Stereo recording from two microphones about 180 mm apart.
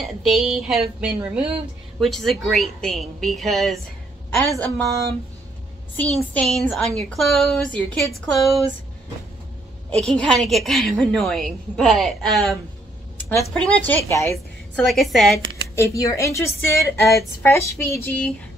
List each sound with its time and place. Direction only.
0.0 s a woman's voice: centre (ahead or behind)
6.1 s a woman's voice: centre (ahead or behind)
10.0 s a woman's voice: 5° left (ahead or behind)
13.4 s a sound: 5° left (ahead or behind)
14.8 s a woman's voice: centre (ahead or behind)
15.7 s a sound: 15° left (ahead or behind)